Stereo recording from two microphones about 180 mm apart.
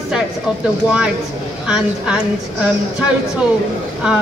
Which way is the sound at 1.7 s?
5° right (ahead or behind).